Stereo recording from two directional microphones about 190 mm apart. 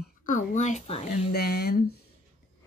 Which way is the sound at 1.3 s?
55° left (ahead or behind).